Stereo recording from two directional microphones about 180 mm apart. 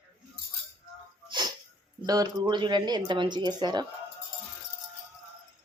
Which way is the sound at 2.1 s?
20° right (ahead or behind).